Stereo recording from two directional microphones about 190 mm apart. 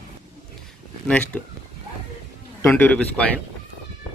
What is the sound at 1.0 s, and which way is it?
Speech, 5° left (ahead or behind).